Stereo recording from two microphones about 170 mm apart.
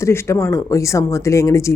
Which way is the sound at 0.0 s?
15° left (ahead or behind).